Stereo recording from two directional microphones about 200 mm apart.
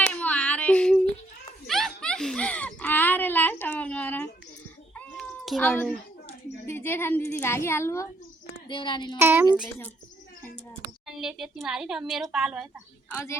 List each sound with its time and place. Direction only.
0.0 s a sound: 5° left (ahead or behind)
4.9 s cat: 5° left (ahead or behind)
8.6 s speech: 25° left (ahead or behind)
9.1 s a woman's voice: 10° right (ahead or behind)
11.0 s a woman's voice: 5° right (ahead or behind)
13.1 s speech: 10° left (ahead or behind)